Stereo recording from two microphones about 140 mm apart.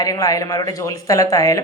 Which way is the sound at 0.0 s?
25° left (ahead or behind).